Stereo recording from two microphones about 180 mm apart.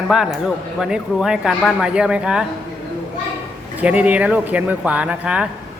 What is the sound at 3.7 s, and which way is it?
Speech, 10° right (ahead or behind).